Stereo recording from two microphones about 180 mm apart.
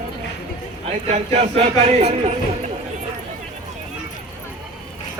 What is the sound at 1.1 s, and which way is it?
Speech, 35° right (ahead or behind).